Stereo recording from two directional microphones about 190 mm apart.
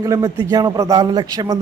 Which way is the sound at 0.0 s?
20° right (ahead or behind).